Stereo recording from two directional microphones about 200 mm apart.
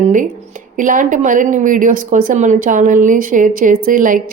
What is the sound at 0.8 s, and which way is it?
Speech, 40° right (ahead or behind).